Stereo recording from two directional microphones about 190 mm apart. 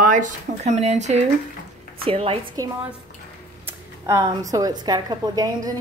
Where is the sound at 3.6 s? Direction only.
15° right (ahead or behind).